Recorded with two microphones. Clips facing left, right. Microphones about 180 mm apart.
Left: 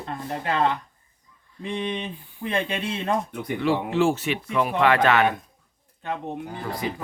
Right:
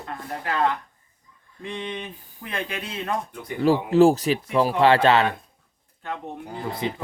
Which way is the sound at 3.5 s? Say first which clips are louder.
Right 5 dB; 40° right (ahead or behind).